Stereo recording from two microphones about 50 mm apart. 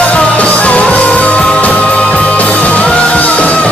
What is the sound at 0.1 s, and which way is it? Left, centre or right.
Music, left.